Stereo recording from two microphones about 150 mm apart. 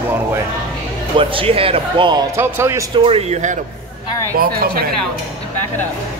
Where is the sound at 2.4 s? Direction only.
15° right (ahead or behind).